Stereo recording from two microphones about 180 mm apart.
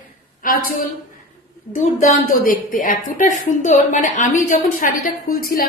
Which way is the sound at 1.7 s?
45° left (ahead or behind).